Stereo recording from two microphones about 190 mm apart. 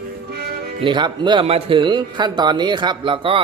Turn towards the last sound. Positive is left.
turn(degrees=-25)  # may be behind; listen again after turning